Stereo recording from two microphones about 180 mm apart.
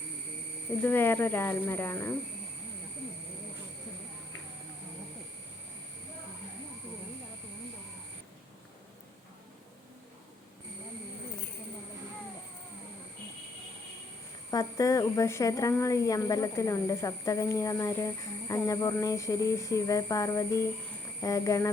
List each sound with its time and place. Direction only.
0.8 s speech: 10° left (ahead or behind)
14.5 s a woman's voice: 20° left (ahead or behind)